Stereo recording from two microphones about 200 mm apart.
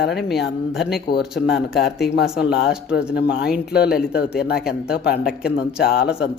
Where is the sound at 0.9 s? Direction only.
50° left (ahead or behind).